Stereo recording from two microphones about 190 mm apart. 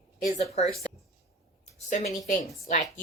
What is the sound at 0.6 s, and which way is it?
Speech, 35° left (ahead or behind).